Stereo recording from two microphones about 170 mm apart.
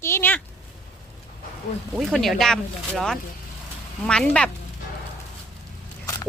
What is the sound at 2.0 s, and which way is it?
Speech, centre (ahead or behind).